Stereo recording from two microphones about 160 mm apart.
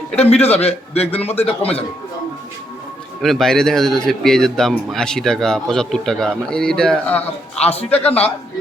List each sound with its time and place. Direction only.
0.2 s a man's voice: 40° left (ahead or behind)
3.2 s a man's voice: centre (ahead or behind)
7.7 s a man's voice: 40° left (ahead or behind)
7.9 s a man's voice: 10° left (ahead or behind)